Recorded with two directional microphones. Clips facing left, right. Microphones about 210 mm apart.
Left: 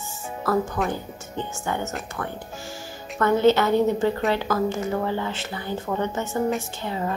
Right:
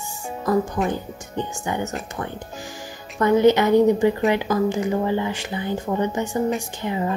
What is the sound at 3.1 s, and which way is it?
Speech, 15° right (ahead or behind).